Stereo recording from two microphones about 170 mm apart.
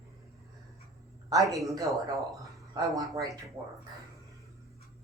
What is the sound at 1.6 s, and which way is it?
Speech, 20° right (ahead or behind).